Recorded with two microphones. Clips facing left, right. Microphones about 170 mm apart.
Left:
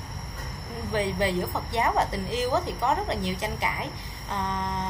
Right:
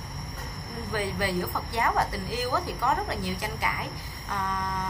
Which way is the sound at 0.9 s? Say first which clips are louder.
Left 3 dB; 20° left (ahead or behind).